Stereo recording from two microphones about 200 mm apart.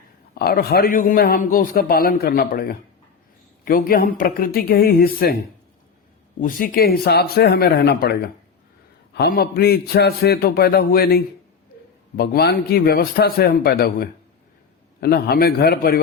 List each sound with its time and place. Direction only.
0.3 s a man's voice: 50° left (ahead or behind)
6.4 s a man's voice: 45° left (ahead or behind)